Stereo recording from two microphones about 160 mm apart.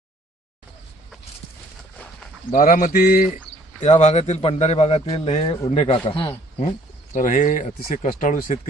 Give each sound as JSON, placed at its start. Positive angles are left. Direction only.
{"t": 2.5, "sound": "speech", "side_deg": 60}
{"t": 3.8, "sound": "a man's voice", "side_deg": 45}
{"t": 7.1, "sound": "a man's voice", "side_deg": 50}